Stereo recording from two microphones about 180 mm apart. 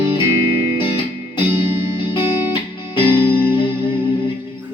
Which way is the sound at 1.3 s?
30° left (ahead or behind).